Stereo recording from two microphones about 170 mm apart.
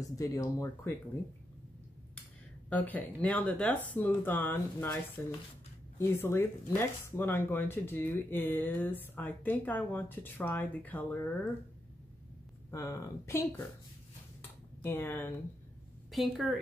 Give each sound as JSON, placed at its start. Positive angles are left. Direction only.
{"t": 0.2, "sound": "speech", "side_deg": 15}
{"t": 2.7, "sound": "speech", "side_deg": 10}
{"t": 12.7, "sound": "speech", "side_deg": 15}
{"t": 14.8, "sound": "speech", "side_deg": 10}
{"t": 16.1, "sound": "a woman's voice", "side_deg": 0}